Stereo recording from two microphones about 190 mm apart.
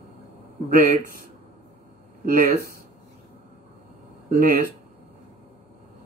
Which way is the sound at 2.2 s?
45° right (ahead or behind).